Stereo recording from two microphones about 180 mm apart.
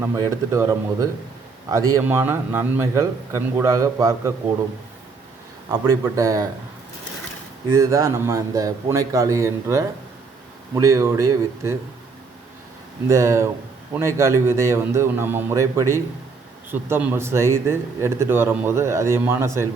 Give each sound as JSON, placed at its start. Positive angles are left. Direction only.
{"t": 0.0, "sound": "a man's voice", "side_deg": -20}
{"t": 5.7, "sound": "speech", "side_deg": -20}
{"t": 7.7, "sound": "a man's voice", "side_deg": -15}
{"t": 13.1, "sound": "a man's voice", "side_deg": -15}